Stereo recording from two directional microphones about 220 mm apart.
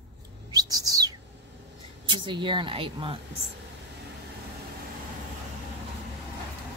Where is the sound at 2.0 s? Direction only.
20° right (ahead or behind).